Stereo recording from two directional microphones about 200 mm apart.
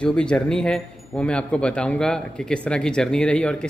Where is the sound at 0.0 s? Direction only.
5° left (ahead or behind).